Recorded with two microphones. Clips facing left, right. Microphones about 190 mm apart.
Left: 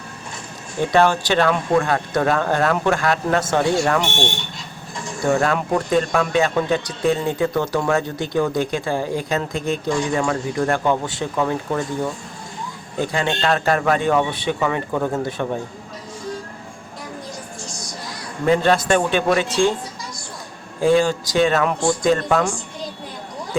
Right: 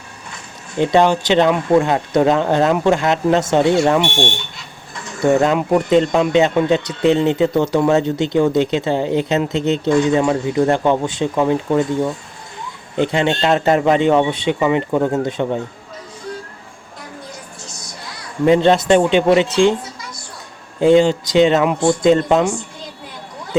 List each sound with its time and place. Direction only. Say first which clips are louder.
0.8 s speech: right 3 dB; 20° right (ahead or behind)
5.2 s speech: right 5 dB; 20° right (ahead or behind)
13.0 s speech: right 5 dB; 20° right (ahead or behind)
18.4 s speech: right 5 dB; 20° right (ahead or behind)
20.8 s speech: right 5 dB; 20° right (ahead or behind)